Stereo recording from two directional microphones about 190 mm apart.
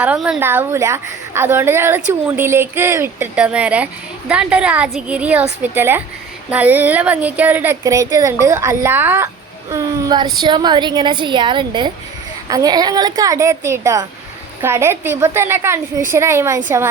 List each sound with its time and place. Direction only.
0.0 s a woman's voice: 5° right (ahead or behind)